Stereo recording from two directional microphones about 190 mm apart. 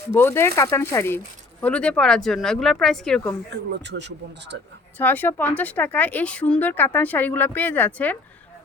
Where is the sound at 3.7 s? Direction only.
65° right (ahead or behind).